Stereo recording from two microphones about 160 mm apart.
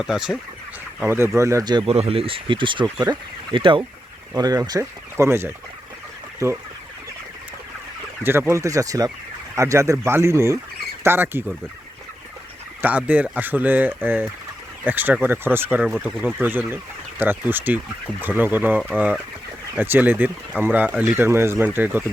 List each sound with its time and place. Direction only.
0.0 s speech: 5° right (ahead or behind); by 1.8 s 25° right (ahead or behind)
1.9 s speech: 35° right (ahead or behind); by 6.6 s 15° right (ahead or behind)
8.2 s speech: 15° right (ahead or behind)
12.8 s speech: 10° right (ahead or behind)